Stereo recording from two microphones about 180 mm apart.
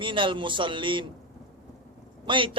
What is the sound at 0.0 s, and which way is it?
A man's voice, 30° right (ahead or behind).